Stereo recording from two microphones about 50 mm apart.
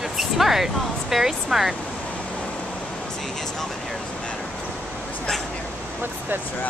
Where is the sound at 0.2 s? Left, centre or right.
Centre.